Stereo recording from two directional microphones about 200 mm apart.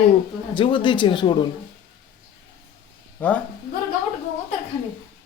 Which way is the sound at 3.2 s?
10° left (ahead or behind).